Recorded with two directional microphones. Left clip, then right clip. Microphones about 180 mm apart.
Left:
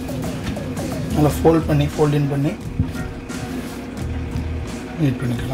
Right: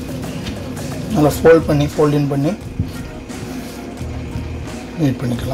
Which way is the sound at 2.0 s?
45° right (ahead or behind).